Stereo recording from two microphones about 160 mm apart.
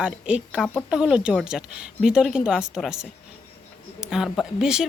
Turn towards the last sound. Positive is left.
turn(degrees=-5)  # may be behind; listen again after turning